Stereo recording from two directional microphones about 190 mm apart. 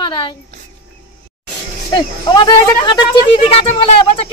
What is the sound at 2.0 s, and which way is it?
Speech, 25° left (ahead or behind).